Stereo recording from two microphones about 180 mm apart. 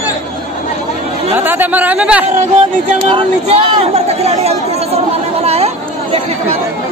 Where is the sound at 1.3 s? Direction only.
10° right (ahead or behind).